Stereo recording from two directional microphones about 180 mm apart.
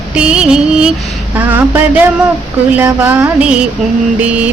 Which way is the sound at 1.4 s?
10° right (ahead or behind).